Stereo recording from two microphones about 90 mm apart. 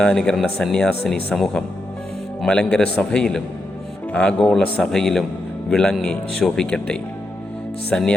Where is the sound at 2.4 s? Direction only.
10° left (ahead or behind).